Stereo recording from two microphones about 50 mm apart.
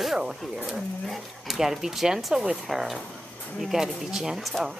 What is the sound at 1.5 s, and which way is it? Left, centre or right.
Speech, centre.